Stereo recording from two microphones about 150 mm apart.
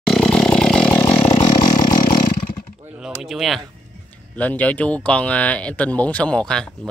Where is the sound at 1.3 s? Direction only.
30° left (ahead or behind).